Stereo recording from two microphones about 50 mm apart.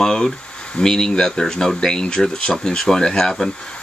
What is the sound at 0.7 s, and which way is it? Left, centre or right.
Speech, centre.